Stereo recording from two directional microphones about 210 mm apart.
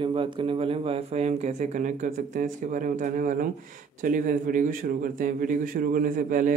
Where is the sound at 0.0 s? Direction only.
25° right (ahead or behind).